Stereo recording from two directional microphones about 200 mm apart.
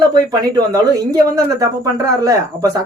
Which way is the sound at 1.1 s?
15° right (ahead or behind).